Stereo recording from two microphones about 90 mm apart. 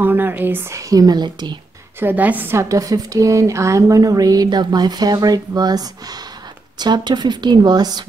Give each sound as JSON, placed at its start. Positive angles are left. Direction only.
{"t": 0.0, "sound": "speech", "side_deg": -20}
{"t": 0.7, "sound": "a woman's voice", "side_deg": -40}
{"t": 2.0, "sound": "speech", "side_deg": -20}
{"t": 2.5, "sound": "a woman's voice", "side_deg": -40}